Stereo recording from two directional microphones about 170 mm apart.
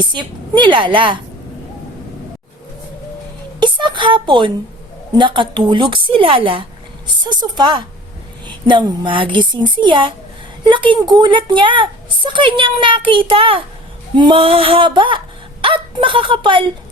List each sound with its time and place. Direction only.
0.0 s a woman's voice: 25° right (ahead or behind)
3.6 s a woman's voice: 25° right (ahead or behind)
13.2 s a sound: 30° right (ahead or behind)
15.6 s a woman's voice: 30° right (ahead or behind)